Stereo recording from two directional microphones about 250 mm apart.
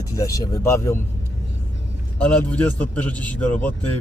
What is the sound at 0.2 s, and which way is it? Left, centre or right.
Speech, centre.